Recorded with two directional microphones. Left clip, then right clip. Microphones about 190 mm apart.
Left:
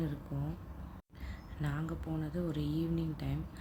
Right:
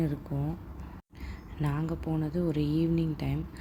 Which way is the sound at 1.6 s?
15° right (ahead or behind).